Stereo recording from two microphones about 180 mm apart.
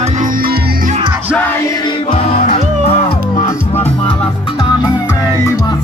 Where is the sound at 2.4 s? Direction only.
35° left (ahead or behind).